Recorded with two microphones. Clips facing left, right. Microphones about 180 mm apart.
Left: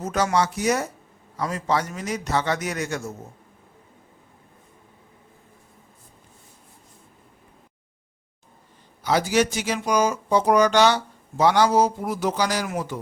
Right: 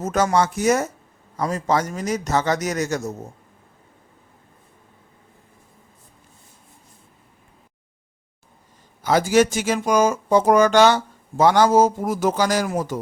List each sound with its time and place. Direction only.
0.0 s a man's voice: 45° right (ahead or behind)
9.0 s speech: 45° right (ahead or behind)